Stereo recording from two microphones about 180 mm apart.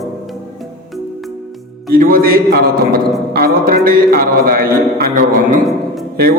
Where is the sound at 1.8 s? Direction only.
55° right (ahead or behind).